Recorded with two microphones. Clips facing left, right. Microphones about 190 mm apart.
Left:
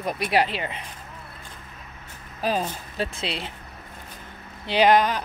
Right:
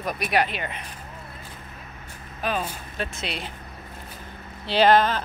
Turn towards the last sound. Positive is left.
turn(degrees=15)  # may be behind; listen again after turning